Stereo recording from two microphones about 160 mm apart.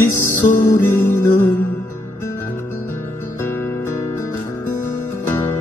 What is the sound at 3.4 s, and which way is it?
Music, 15° left (ahead or behind).